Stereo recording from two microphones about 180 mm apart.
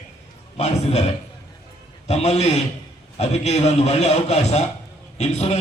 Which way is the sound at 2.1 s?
35° left (ahead or behind).